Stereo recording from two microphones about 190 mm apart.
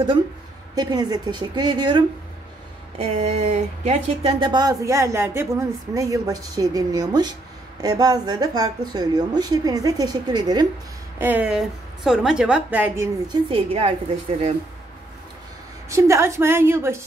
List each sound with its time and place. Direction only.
0.7 s speech: 20° right (ahead or behind)
3.0 s speech: 35° right (ahead or behind)
11.1 s a woman's voice: 10° right (ahead or behind)
13.5 s a woman's voice: 30° right (ahead or behind)
15.9 s a woman's voice: 15° right (ahead or behind)